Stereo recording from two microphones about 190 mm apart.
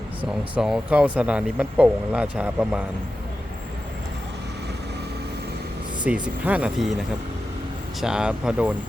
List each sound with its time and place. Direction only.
0.3 s speech: 5° right (ahead or behind)
6.1 s speech: 5° right (ahead or behind)
8.0 s speech: 5° right (ahead or behind)